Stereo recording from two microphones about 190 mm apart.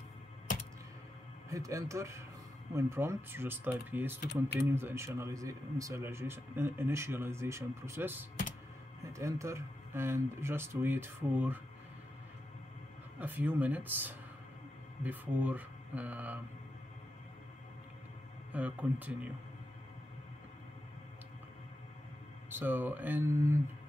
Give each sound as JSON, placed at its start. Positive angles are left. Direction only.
{"t": 1.5, "sound": "speech", "side_deg": -15}
{"t": 13.2, "sound": "speech", "side_deg": -10}
{"t": 18.5, "sound": "speech", "side_deg": -10}
{"t": 22.5, "sound": "speech", "side_deg": -10}